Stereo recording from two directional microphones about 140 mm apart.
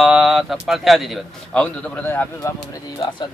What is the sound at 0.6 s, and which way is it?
A man's voice, centre (ahead or behind).